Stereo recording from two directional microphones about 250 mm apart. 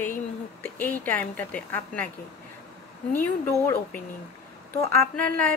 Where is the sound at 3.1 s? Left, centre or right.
Centre.